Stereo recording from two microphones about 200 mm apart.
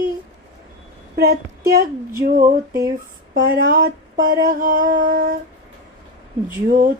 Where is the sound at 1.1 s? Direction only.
50° right (ahead or behind).